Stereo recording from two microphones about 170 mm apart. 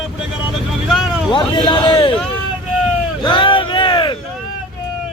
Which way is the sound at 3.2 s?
30° left (ahead or behind).